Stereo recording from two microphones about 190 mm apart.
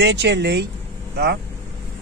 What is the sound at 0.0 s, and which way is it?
Speech, 70° right (ahead or behind).